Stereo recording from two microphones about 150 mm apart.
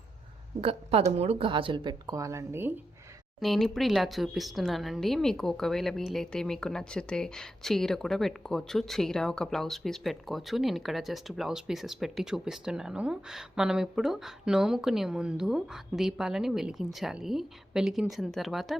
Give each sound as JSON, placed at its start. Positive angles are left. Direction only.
{"t": 0.6, "sound": "a woman's voice", "side_deg": -40}
{"t": 3.4, "sound": "speech", "side_deg": 0}